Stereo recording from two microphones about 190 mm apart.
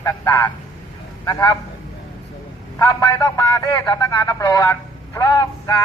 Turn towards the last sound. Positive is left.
turn(degrees=20)  # may be behind; listen again after turning